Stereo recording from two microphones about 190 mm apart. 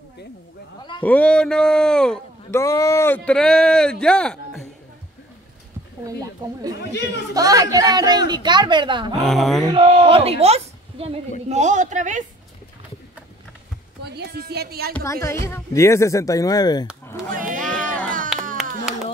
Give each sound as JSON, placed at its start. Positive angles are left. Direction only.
{"t": 1.0, "sound": "a man's voice", "side_deg": 5}
{"t": 2.6, "sound": "speech", "side_deg": 15}
{"t": 6.8, "sound": "speech", "side_deg": 65}
{"t": 7.3, "sound": "a woman's voice", "side_deg": -20}
{"t": 9.2, "sound": "a man's voice", "side_deg": 0}
{"t": 9.8, "sound": "speech", "side_deg": -30}
{"t": 14.0, "sound": "speech", "side_deg": -60}
{"t": 15.4, "sound": "speech", "side_deg": 15}
{"t": 17.0, "sound": "a sound", "side_deg": 15}
{"t": 17.3, "sound": "a sound", "side_deg": -45}
{"t": 17.7, "sound": "a sound", "side_deg": 5}